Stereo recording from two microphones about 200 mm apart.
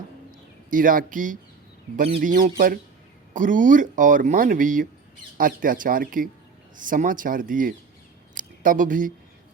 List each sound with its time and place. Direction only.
0.7 s speech: 45° right (ahead or behind)